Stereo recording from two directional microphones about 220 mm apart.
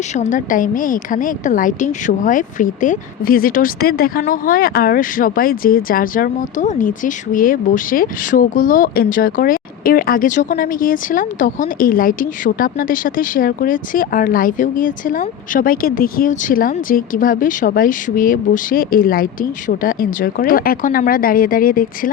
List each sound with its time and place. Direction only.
0.1 s a woman's voice: 35° left (ahead or behind)